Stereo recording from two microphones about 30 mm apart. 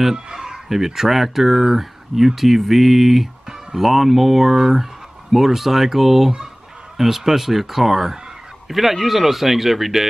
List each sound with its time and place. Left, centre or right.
0.0 s fowl: centre
0.7 s speech: centre